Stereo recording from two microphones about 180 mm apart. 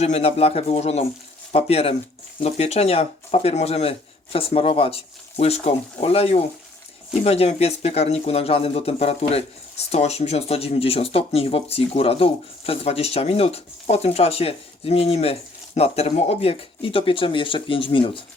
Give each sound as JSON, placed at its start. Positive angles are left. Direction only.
{"t": 0.0, "sound": "speech", "side_deg": 35}